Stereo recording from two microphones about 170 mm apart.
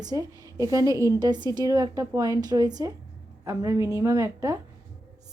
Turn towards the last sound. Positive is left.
turn(degrees=-20)  # may be behind; listen again after turning